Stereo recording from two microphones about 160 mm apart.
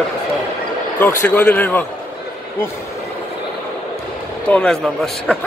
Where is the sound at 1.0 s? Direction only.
10° left (ahead or behind).